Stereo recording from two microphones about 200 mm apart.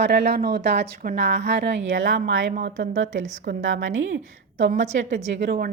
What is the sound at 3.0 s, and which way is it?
Speech, 40° right (ahead or behind).